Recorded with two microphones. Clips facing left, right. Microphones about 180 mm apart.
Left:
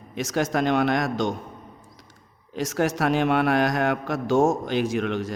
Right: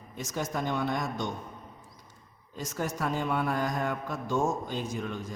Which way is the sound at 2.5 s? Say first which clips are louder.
Left 10 dB; 85° left.